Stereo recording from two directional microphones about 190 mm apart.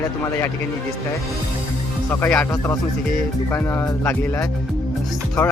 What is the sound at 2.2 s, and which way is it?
Speech, 10° left (ahead or behind).